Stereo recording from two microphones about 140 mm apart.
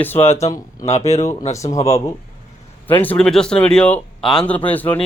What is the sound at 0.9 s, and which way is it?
Speech, 50° left (ahead or behind).